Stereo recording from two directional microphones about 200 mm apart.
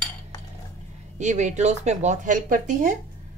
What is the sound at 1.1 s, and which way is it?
Speech, 35° right (ahead or behind).